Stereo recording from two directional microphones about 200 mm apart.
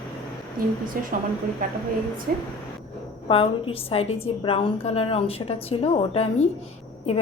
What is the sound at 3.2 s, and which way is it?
A woman's voice, 25° left (ahead or behind).